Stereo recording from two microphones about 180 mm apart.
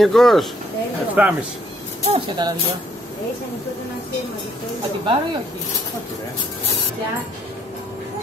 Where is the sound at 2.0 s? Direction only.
30° right (ahead or behind).